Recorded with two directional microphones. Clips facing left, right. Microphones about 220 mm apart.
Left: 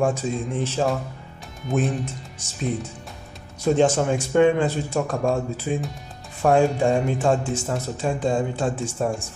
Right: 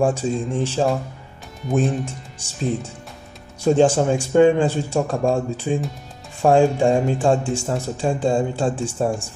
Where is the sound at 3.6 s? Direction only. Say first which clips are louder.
Right 3 dB; 30° right (ahead or behind).